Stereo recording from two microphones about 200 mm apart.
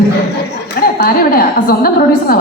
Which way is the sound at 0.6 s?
50° left (ahead or behind).